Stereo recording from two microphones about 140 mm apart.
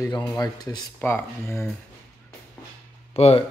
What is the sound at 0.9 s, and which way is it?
Speech, 15° left (ahead or behind).